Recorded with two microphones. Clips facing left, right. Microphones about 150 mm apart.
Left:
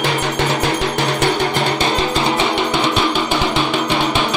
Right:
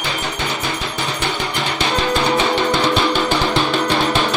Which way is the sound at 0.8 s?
75° left (ahead or behind).